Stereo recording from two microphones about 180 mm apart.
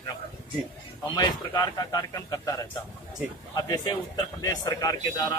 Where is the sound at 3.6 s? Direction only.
20° left (ahead or behind).